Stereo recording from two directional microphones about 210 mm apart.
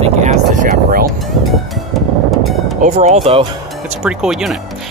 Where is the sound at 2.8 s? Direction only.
30° right (ahead or behind).